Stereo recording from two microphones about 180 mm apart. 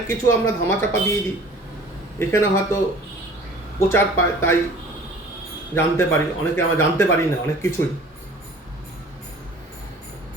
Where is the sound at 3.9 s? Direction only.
15° left (ahead or behind).